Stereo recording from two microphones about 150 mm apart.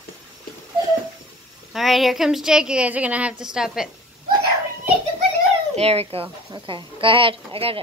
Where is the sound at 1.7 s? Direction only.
Centre (ahead or behind).